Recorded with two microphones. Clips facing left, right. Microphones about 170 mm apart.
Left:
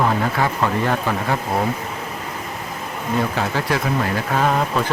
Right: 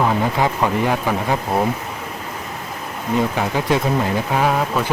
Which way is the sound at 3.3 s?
20° right (ahead or behind).